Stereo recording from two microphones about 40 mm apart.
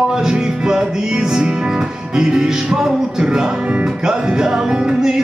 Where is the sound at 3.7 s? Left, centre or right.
Right.